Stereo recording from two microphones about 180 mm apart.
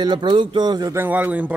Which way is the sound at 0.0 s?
25° right (ahead or behind).